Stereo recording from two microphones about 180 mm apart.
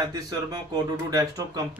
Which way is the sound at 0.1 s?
20° right (ahead or behind).